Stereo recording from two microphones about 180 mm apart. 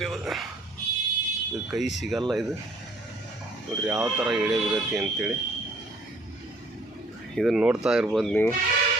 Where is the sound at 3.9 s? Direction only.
15° right (ahead or behind).